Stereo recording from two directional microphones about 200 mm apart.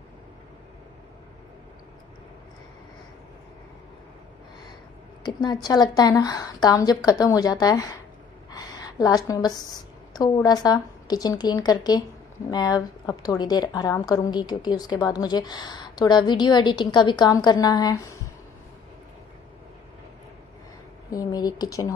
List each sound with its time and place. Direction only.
5.2 s a woman's voice: 20° left (ahead or behind)
8.5 s a sound: 20° left (ahead or behind)
10.1 s a woman's voice: 20° left (ahead or behind)
21.1 s a woman's voice: 20° left (ahead or behind)